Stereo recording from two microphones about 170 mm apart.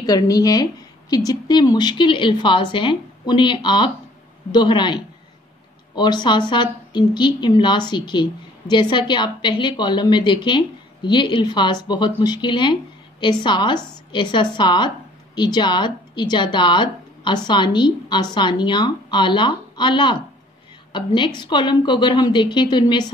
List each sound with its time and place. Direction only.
0.0 s a woman's voice: 20° left (ahead or behind)